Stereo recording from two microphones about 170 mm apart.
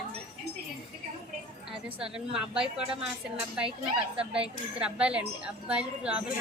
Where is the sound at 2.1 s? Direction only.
5° right (ahead or behind).